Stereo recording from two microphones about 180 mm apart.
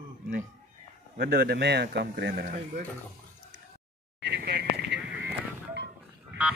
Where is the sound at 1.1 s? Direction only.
60° right (ahead or behind).